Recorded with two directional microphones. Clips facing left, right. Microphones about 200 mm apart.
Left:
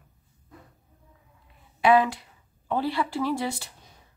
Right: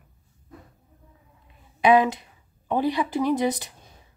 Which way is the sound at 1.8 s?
20° right (ahead or behind).